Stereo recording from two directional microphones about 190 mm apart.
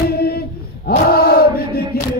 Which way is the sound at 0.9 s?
55° left (ahead or behind).